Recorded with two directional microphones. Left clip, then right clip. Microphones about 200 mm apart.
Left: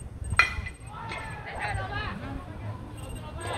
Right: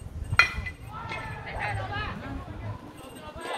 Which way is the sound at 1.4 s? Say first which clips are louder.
Even; 20° left (ahead or behind).